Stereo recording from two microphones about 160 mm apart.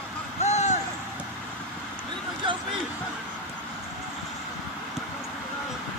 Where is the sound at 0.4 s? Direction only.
45° left (ahead or behind).